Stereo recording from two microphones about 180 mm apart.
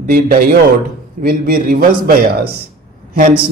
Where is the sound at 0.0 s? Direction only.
55° right (ahead or behind).